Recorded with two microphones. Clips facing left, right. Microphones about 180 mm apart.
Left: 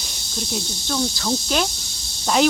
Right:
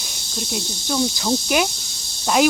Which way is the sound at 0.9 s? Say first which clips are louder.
Right 2 dB; 10° right (ahead or behind).